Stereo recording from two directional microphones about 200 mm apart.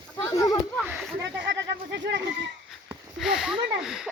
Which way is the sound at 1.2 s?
60° right (ahead or behind).